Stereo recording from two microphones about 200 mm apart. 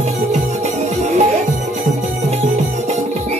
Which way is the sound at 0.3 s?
35° right (ahead or behind).